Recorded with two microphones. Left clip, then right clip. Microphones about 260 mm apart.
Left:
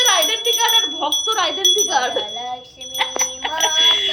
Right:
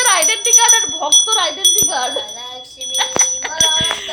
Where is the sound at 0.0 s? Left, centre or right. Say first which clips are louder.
Right 1 dB; centre.